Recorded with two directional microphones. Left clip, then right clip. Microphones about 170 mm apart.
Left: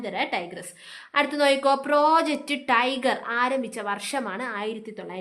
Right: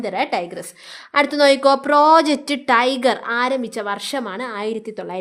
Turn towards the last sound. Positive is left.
turn(degrees=-40)  # may be behind; listen again after turning